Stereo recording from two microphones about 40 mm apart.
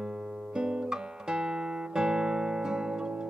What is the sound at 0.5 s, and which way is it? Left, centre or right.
Guitar, right.